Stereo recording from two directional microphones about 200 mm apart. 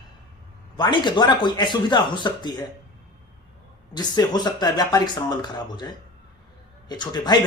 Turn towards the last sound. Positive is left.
turn(degrees=20)  # may be behind; listen again after turning